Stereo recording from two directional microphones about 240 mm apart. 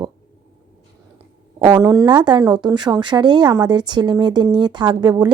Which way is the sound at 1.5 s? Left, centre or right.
Centre.